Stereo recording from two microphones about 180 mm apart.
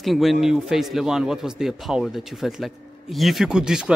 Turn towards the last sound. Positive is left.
turn(degrees=-5)  # may be behind; listen again after turning